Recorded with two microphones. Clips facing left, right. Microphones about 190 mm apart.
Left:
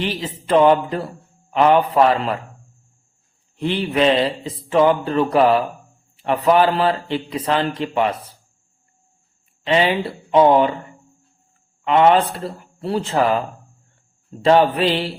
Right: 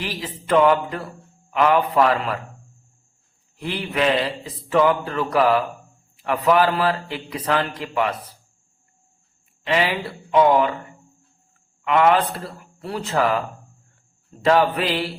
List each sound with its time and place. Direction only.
0.0 s a man's voice: 25° left (ahead or behind)
3.6 s a man's voice: 30° left (ahead or behind)
9.6 s a man's voice: 25° left (ahead or behind)
11.9 s a man's voice: 25° left (ahead or behind)
14.4 s a man's voice: 30° left (ahead or behind)